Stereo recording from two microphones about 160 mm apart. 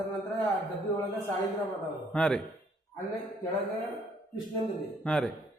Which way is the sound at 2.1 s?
5° left (ahead or behind).